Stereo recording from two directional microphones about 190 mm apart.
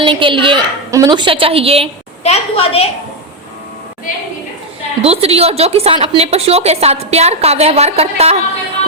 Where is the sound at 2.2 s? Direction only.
35° left (ahead or behind).